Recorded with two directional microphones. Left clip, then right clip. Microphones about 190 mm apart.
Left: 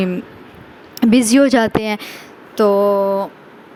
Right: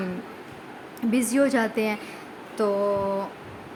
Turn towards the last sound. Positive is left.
turn(degrees=40)  # may be behind; listen again after turning